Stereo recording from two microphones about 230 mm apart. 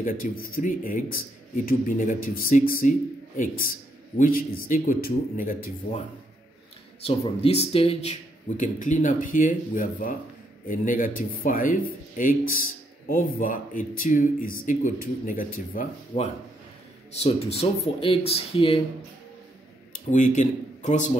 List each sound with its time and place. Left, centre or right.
0.0 s speech: left
7.1 s speech: left
17.2 s speech: left
19.9 s speech: left